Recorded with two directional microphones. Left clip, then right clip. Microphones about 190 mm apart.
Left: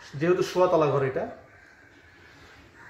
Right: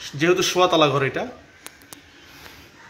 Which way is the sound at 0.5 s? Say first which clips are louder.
Right 3 dB; 20° right (ahead or behind).